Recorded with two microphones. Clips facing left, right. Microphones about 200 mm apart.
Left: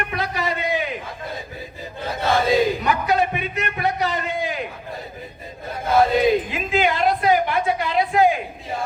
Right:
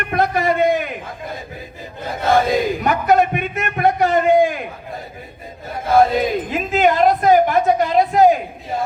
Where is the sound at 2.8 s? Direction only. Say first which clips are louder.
Right 5 dB; 55° right (ahead or behind).